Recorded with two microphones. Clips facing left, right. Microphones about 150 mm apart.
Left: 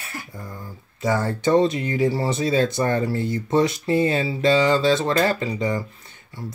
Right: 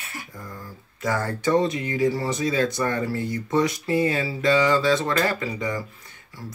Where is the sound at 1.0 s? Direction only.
25° left (ahead or behind).